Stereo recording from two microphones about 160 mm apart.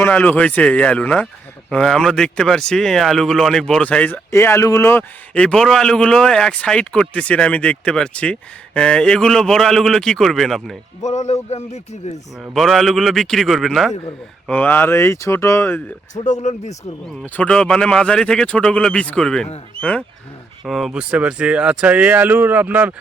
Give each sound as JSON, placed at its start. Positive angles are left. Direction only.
{"t": 0.0, "sound": "speech", "side_deg": 10}
{"t": 11.0, "sound": "speech", "side_deg": 45}
{"t": 12.4, "sound": "speech", "side_deg": 0}
{"t": 16.1, "sound": "speech", "side_deg": 50}
{"t": 17.2, "sound": "speech", "side_deg": 10}